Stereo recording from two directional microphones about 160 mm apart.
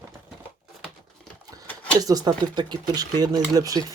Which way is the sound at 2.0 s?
25° right (ahead or behind).